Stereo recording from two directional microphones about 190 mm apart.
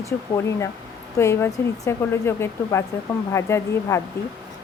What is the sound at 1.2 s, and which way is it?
Speech, 15° left (ahead or behind).